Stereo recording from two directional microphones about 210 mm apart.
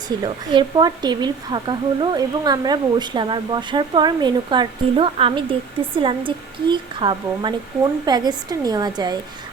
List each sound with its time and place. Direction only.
0.1 s a woman's voice: 20° right (ahead or behind)